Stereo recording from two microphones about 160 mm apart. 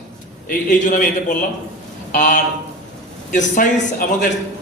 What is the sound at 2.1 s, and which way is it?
A man's voice, 55° left (ahead or behind).